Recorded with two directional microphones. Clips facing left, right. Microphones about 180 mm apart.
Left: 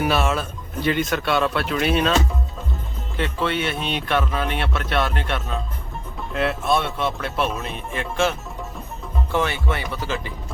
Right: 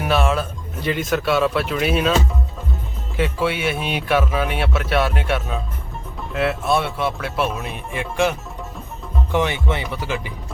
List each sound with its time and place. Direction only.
0.0 s speech: centre (ahead or behind)
3.2 s speech: 10° right (ahead or behind)